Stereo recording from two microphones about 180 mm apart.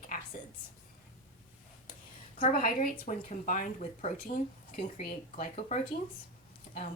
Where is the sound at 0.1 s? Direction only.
45° left (ahead or behind).